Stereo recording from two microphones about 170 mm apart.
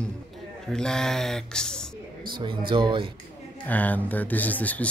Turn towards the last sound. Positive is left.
turn(degrees=10)  # may be behind; listen again after turning